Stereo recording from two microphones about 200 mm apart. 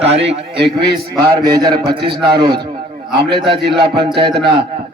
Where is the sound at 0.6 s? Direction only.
55° right (ahead or behind).